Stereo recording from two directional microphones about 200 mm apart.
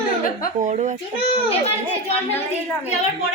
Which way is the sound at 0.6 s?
35° right (ahead or behind).